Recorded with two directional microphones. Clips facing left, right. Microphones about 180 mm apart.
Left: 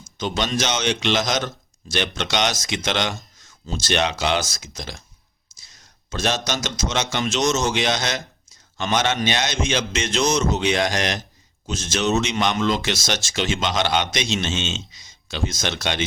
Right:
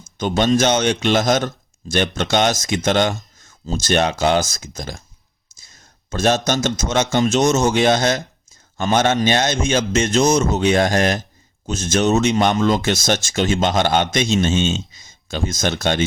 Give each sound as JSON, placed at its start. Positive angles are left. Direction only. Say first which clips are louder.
{"t": 0.2, "sound": "a man's voice", "louder": "right 7 dB", "side_deg": -50}